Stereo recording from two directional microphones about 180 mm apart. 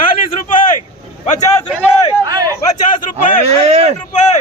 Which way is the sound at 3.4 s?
35° right (ahead or behind).